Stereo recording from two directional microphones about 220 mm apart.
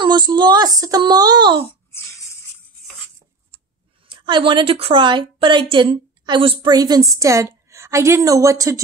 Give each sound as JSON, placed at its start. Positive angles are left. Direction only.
{"t": 0.0, "sound": "a woman's voice", "side_deg": -20}
{"t": 4.1, "sound": "a woman's voice", "side_deg": -20}